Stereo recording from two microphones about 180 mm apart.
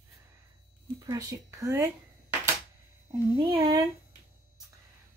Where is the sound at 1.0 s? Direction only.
20° right (ahead or behind).